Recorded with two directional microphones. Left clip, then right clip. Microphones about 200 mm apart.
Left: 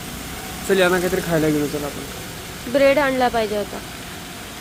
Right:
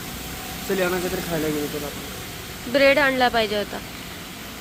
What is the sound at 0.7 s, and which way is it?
Speech, 55° left (ahead or behind).